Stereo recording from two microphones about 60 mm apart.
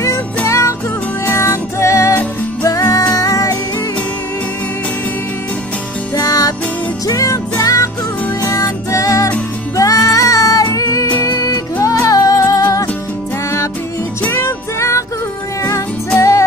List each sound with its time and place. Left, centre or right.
0.5 s music: left
2.6 s music: left
6.1 s music: left
7.1 s music: left
11.2 s music: left
14.3 s music: left
16.2 s music: left